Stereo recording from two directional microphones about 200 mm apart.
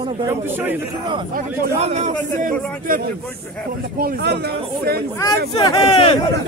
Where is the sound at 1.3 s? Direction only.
35° right (ahead or behind).